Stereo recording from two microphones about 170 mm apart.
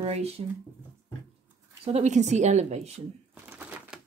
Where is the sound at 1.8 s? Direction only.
40° right (ahead or behind).